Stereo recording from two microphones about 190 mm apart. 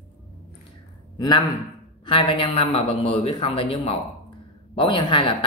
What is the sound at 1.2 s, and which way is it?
A man's voice, 20° left (ahead or behind).